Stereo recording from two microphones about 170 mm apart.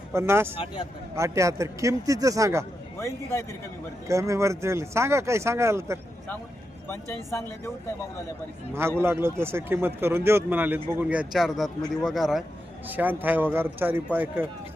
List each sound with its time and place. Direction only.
0.1 s a man's voice: 15° right (ahead or behind)
0.5 s speech: 30° left (ahead or behind)
1.1 s speech: 15° right (ahead or behind)
4.1 s a man's voice: 15° right (ahead or behind)
6.8 s speech: 15° left (ahead or behind)
9.0 s a man's voice: 15° right (ahead or behind)